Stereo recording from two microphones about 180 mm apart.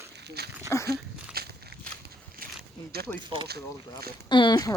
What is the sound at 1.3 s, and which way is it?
Walk, 60° right (ahead or behind).